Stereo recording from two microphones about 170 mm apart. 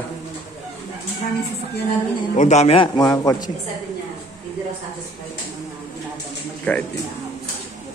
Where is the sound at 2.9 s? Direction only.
20° left (ahead or behind).